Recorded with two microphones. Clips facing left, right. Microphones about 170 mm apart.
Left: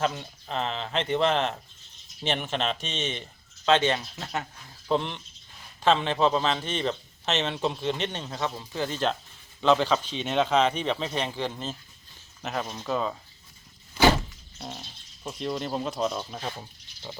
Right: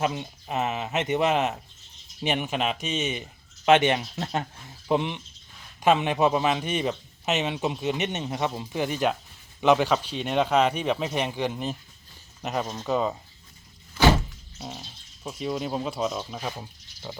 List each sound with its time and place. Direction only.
0.0 s a man's voice: 10° right (ahead or behind)
3.7 s speech: 15° right (ahead or behind)
4.9 s a man's voice: 10° right (ahead or behind)
14.6 s speech: 5° right (ahead or behind)